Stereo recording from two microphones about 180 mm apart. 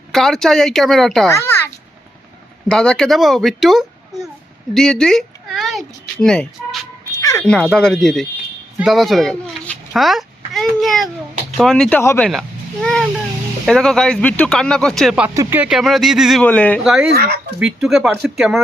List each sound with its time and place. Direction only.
0.1 s speech: centre (ahead or behind)
1.3 s a sound: 15° left (ahead or behind)
2.6 s a child's voice: 5° left (ahead or behind)
7.2 s a sound: 15° left (ahead or behind)
7.4 s speech: 5° left (ahead or behind)
8.8 s a sound: centre (ahead or behind)
11.5 s speech: centre (ahead or behind)
17.1 s speech: 60° right (ahead or behind)
17.6 s speech: 5° right (ahead or behind)